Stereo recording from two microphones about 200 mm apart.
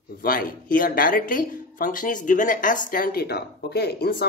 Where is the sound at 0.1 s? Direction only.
45° left (ahead or behind).